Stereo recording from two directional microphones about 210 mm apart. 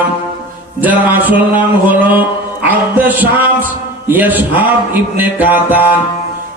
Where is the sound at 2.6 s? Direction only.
10° right (ahead or behind).